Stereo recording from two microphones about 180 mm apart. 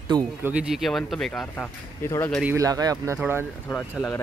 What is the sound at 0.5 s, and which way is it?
Speech, 5° right (ahead or behind).